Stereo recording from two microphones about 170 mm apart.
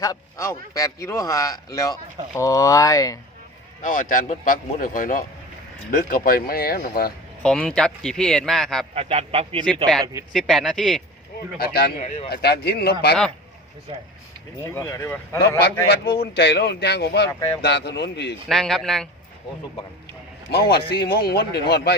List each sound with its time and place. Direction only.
0.0 s speech: 20° left (ahead or behind)
3.8 s a man's voice: 50° left (ahead or behind)
7.4 s speech: 5° left (ahead or behind)
9.0 s a man's voice: 35° right (ahead or behind)
10.0 s speech: 20° right (ahead or behind)
10.3 s speech: centre (ahead or behind)
11.5 s speech: 65° left (ahead or behind)
12.0 s speech: 40° left (ahead or behind)
12.3 s speech: 70° left (ahead or behind)
14.6 s speech: 15° left (ahead or behind)
16.2 s a man's voice: 75° left (ahead or behind)
18.4 s speech: centre (ahead or behind)
20.5 s speech: 70° left (ahead or behind)